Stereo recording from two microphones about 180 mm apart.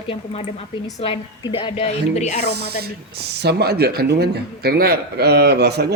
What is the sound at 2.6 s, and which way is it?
Speech, 65° right (ahead or behind).